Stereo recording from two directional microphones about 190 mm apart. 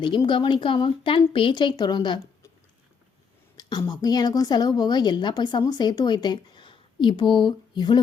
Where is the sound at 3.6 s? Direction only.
20° left (ahead or behind).